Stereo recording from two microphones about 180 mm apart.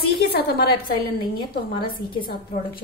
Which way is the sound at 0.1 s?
60° left (ahead or behind).